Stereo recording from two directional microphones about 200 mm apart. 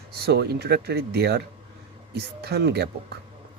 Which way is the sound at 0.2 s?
55° right (ahead or behind).